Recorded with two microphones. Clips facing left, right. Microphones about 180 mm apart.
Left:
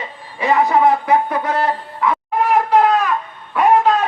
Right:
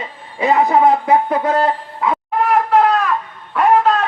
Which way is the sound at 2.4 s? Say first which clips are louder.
Even; centre (ahead or behind).